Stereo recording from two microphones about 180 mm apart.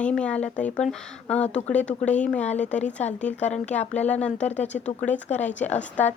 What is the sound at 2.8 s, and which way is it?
Speech, 40° left (ahead or behind).